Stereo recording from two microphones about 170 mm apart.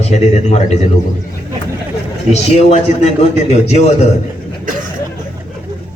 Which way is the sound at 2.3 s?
40° left (ahead or behind).